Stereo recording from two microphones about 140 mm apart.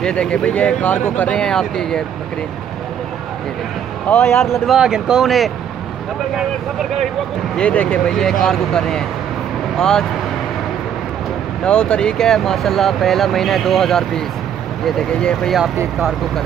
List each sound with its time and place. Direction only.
0.0 s speech: 5° left (ahead or behind)
4.1 s speech: 15° left (ahead or behind)
4.6 s speech: 5° right (ahead or behind)
7.5 s speech: 10° left (ahead or behind)
11.6 s speech: 5° left (ahead or behind)